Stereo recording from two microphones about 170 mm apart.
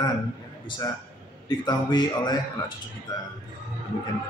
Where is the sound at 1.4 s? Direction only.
25° left (ahead or behind).